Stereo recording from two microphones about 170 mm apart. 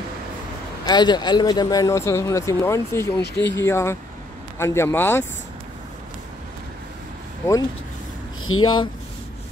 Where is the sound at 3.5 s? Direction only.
15° left (ahead or behind).